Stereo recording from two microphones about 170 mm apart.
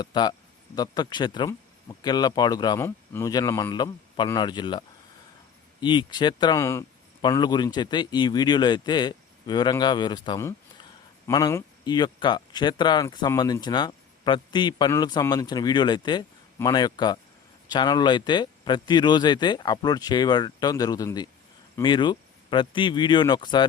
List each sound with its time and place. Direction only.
0.0 s speech: 25° left (ahead or behind)
5.8 s speech: 25° left (ahead or behind)
6.6 s speech: 15° left (ahead or behind)
7.2 s speech: 25° left (ahead or behind)